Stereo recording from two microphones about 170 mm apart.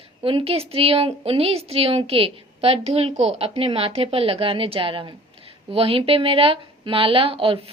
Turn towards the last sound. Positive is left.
turn(degrees=-35)  # may be behind; listen again after turning